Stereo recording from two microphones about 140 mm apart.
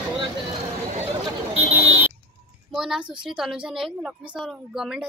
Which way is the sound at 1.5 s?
50° right (ahead or behind).